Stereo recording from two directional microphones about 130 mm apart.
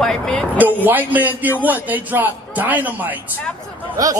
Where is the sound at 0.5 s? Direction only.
15° right (ahead or behind).